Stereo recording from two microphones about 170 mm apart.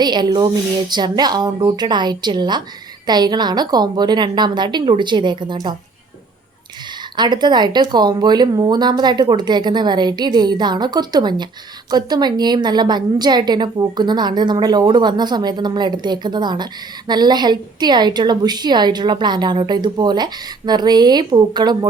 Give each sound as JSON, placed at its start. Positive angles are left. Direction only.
{"t": 0.0, "sound": "a woman's voice", "side_deg": -25}
{"t": 7.2, "sound": "a woman's voice", "side_deg": -25}